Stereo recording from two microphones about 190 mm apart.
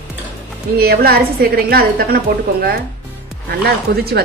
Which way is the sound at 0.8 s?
55° right (ahead or behind).